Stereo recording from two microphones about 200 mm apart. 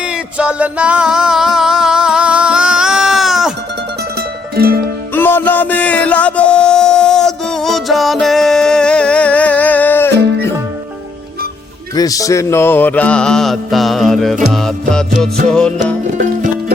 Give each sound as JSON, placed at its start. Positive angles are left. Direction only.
{"t": 0.0, "sound": "music", "side_deg": -5}
{"t": 4.5, "sound": "music", "side_deg": -50}
{"t": 5.1, "sound": "music", "side_deg": 10}
{"t": 11.9, "sound": "mantra", "side_deg": 15}
{"t": 14.5, "sound": "music", "side_deg": 5}
{"t": 15.4, "sound": "mantra", "side_deg": 5}
{"t": 16.1, "sound": "music", "side_deg": -45}